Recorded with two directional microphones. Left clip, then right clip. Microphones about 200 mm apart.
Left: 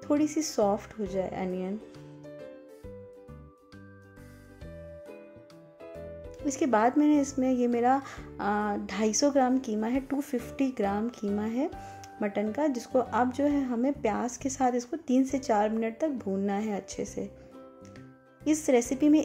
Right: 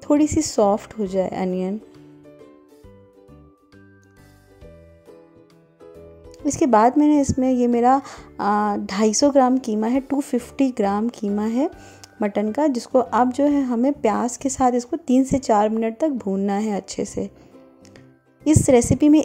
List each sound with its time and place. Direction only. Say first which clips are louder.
0.0 s speech: right 9 dB; 40° right (ahead or behind)
6.4 s speech: right 9 dB; 30° right (ahead or behind)
18.4 s speech: right 9 dB; 35° right (ahead or behind)